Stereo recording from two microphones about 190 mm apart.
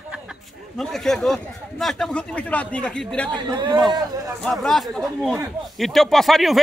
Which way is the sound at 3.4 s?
25° right (ahead or behind).